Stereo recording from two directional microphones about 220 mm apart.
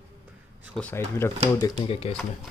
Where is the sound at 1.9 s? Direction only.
25° left (ahead or behind).